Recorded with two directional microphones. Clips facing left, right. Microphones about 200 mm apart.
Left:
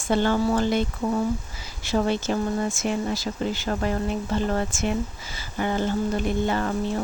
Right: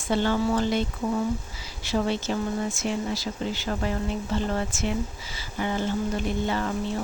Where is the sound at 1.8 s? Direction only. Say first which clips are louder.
Left 2 dB; 50° left (ahead or behind).